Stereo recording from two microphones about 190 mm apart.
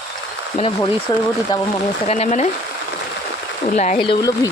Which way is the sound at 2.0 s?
35° left (ahead or behind).